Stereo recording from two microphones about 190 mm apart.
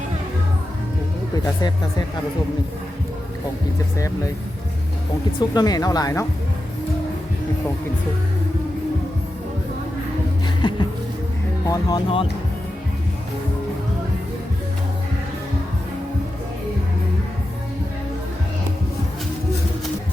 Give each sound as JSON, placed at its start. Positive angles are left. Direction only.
{"t": 3.9, "sound": "speech", "side_deg": 15}
{"t": 5.4, "sound": "speech", "side_deg": 20}
{"t": 10.4, "sound": "music", "side_deg": 25}
{"t": 11.6, "sound": "speech", "side_deg": 20}